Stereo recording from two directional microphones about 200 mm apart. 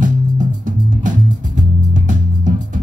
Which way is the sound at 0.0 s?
40° right (ahead or behind).